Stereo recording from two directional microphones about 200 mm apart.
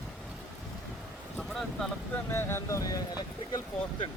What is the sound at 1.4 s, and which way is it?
Vehicle, centre (ahead or behind).